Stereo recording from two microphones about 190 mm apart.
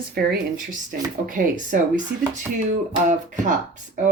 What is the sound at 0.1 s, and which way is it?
Speech, 55° right (ahead or behind).